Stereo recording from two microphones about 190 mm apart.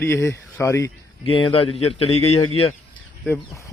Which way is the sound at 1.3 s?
30° left (ahead or behind).